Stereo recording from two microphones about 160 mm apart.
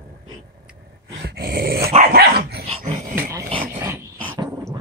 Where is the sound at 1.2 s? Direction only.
70° right (ahead or behind).